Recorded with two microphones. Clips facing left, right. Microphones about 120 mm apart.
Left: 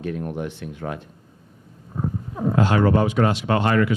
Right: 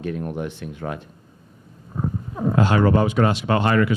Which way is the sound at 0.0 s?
25° right (ahead or behind).